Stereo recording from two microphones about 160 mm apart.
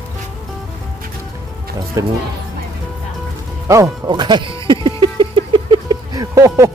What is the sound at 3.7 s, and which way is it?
Speech, 25° right (ahead or behind).